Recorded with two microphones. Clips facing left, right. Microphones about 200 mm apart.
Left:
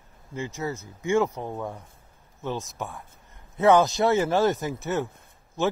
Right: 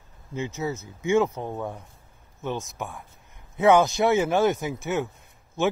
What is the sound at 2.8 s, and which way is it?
A man's voice, centre (ahead or behind).